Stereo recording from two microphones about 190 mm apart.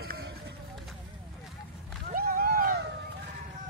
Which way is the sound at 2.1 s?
50° right (ahead or behind).